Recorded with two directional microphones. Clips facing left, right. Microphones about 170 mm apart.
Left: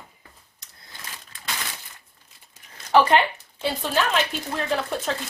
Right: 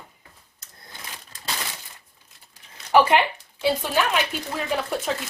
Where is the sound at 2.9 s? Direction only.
10° right (ahead or behind).